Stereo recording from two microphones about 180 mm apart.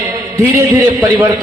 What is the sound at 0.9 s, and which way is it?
Speech, 10° right (ahead or behind).